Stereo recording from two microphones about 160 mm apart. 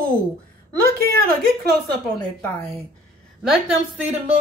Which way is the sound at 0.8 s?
70° right (ahead or behind).